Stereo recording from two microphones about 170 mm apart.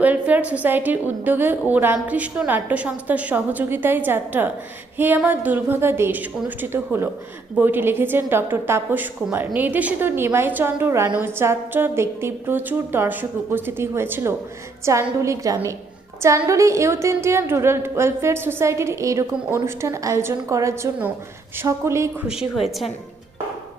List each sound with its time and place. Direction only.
0.0 s a woman's voice: 10° right (ahead or behind)
22.3 s a woman's voice: 5° right (ahead or behind)